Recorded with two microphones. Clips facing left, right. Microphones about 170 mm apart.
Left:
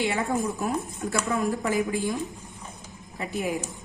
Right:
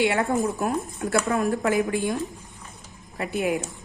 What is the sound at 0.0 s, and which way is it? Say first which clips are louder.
Speech: right 4 dB; 65° right (ahead or behind).